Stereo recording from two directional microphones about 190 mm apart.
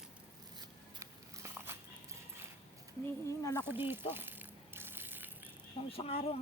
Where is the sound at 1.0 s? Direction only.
15° right (ahead or behind).